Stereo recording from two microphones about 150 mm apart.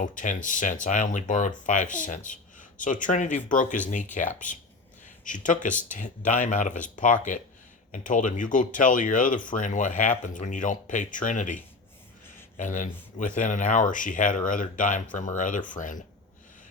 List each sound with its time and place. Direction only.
0.0 s speech: 60° left (ahead or behind)